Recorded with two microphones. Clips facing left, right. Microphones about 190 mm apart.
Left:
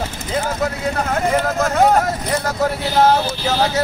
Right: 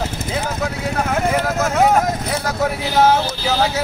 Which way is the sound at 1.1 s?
5° right (ahead or behind).